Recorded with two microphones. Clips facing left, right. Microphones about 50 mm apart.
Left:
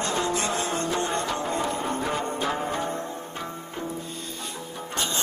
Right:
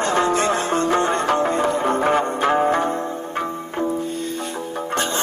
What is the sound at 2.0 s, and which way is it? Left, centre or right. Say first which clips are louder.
Music: right 9 dB; right.